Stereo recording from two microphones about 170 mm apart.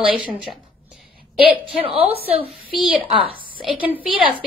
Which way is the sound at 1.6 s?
35° right (ahead or behind).